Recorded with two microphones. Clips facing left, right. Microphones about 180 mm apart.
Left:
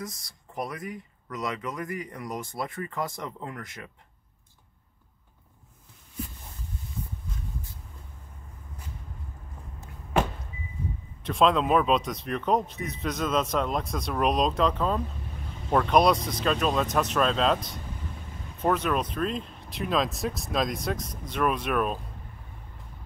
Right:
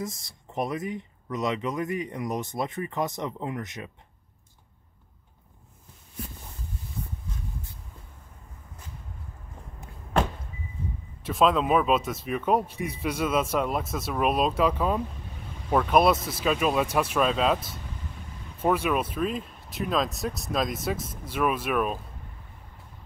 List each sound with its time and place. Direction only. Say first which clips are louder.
0.0 s speech: right 4 dB; 25° right (ahead or behind)
11.2 s speech: even; centre (ahead or behind)